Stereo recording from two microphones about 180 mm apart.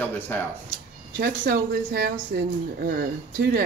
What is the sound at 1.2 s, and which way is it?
Speech, 55° right (ahead or behind).